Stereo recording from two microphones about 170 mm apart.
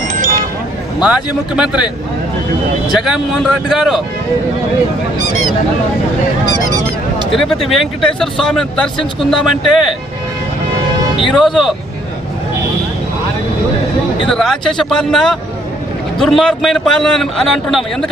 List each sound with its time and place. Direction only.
0.2 s a sound: 50° right (ahead or behind)
1.0 s speech: 5° right (ahead or behind)
2.9 s speech: centre (ahead or behind)
7.3 s speech: centre (ahead or behind)
11.2 s speech: centre (ahead or behind)
14.3 s speech: 5° left (ahead or behind)